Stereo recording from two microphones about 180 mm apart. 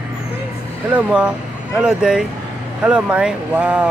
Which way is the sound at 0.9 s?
5° right (ahead or behind).